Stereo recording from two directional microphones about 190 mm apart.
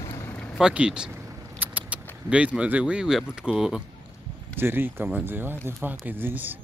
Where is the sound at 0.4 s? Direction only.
5° right (ahead or behind).